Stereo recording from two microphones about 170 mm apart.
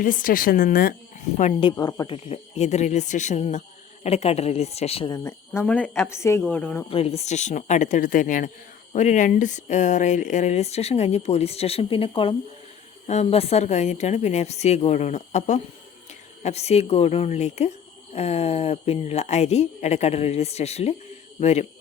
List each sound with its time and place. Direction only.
0.0 s speech: 55° left (ahead or behind)
1.7 s a woman's voice: 15° left (ahead or behind)
2.0 s speech: 40° left (ahead or behind)
5.1 s a woman's voice: 20° left (ahead or behind)
6.9 s speech: 35° left (ahead or behind)